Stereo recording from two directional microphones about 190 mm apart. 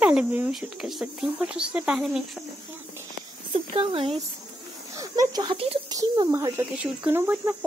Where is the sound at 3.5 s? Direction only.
30° right (ahead or behind).